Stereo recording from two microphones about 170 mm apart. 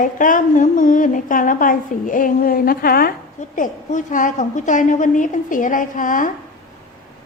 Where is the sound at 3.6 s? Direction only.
50° left (ahead or behind).